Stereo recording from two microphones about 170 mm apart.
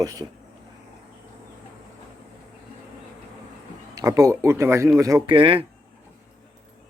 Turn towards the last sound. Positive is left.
turn(degrees=-30)  # may be behind; listen again after turning